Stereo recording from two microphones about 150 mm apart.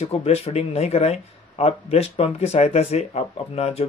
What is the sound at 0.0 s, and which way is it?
Speech, 45° left (ahead or behind).